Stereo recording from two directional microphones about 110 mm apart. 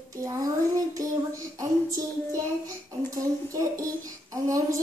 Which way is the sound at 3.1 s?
30° right (ahead or behind).